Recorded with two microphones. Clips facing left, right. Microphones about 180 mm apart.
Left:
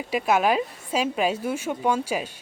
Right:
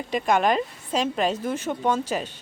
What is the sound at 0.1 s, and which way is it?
Speech, 5° left (ahead or behind).